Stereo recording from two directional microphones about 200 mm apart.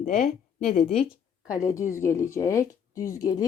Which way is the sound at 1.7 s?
15° left (ahead or behind).